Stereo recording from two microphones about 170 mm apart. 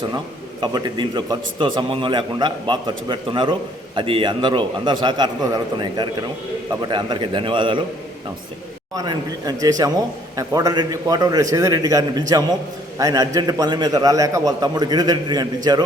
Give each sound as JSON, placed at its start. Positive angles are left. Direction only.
{"t": 0.6, "sound": "a man's voice", "side_deg": -25}
{"t": 9.0, "sound": "a man's voice", "side_deg": -20}